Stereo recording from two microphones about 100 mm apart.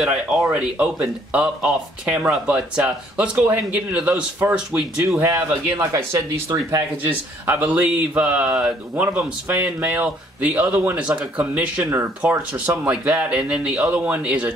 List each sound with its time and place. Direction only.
0.0 s speech: 10° right (ahead or behind)
5.2 s a man's voice: 25° right (ahead or behind)
6.1 s speech: 35° right (ahead or behind)
7.0 s speech: 20° right (ahead or behind)